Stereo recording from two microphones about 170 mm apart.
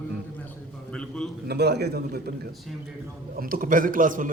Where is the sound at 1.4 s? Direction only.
75° right (ahead or behind).